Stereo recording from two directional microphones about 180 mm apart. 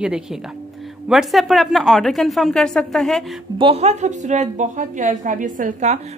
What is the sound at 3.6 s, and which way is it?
A woman's voice, 35° right (ahead or behind).